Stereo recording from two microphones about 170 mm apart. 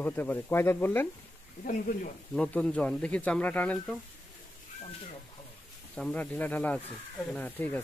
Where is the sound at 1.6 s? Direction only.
50° left (ahead or behind).